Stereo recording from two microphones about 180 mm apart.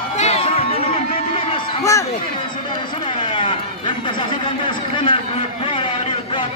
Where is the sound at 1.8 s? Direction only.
15° left (ahead or behind).